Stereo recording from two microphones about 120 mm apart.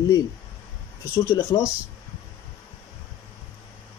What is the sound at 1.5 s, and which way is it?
Speech, 35° left (ahead or behind).